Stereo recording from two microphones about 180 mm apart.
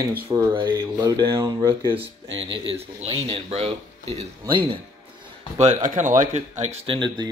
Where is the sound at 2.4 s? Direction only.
75° right (ahead or behind).